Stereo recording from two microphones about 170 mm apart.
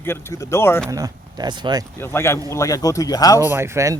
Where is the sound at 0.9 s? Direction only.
20° right (ahead or behind).